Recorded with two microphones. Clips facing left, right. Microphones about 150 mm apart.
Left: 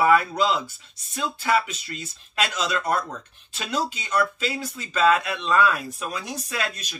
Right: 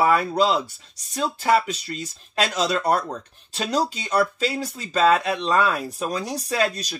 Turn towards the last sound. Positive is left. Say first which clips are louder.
# right 7 dB
turn(degrees=-35)  # may be behind; listen again after turning